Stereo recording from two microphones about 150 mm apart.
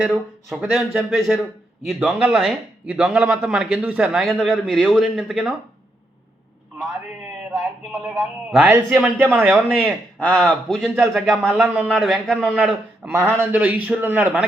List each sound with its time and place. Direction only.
0.0 s a man's voice: 5° right (ahead or behind)
8.0 s a man's voice: 5° right (ahead or behind)
10.2 s a man's voice: 5° left (ahead or behind)
13.0 s a man's voice: 15° right (ahead or behind)